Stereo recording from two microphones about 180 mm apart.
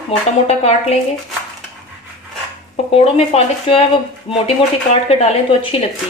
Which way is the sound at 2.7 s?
35° left (ahead or behind).